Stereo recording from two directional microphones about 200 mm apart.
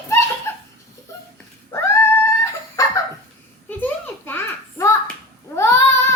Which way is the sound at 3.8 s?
10° left (ahead or behind).